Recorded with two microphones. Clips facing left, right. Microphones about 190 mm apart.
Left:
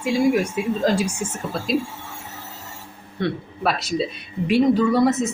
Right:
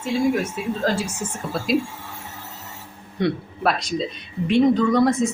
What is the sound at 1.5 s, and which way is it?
Speech, 5° right (ahead or behind).